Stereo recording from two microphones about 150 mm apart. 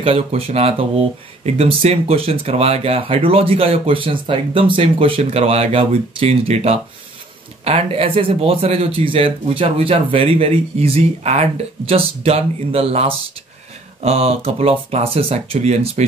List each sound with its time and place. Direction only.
0.0 s speech: 40° right (ahead or behind)